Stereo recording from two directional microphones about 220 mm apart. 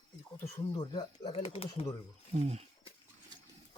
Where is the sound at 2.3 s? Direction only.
30° right (ahead or behind).